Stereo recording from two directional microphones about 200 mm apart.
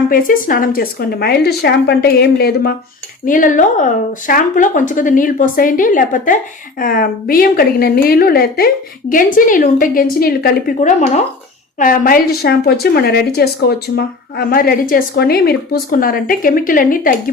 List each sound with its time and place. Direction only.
0.1 s a woman's voice: 45° left (ahead or behind)